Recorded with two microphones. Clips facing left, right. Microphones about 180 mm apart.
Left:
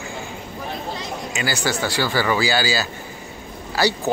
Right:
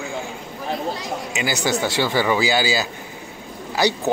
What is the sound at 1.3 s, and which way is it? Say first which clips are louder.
Speech: right 2 dB; 20° right (ahead or behind).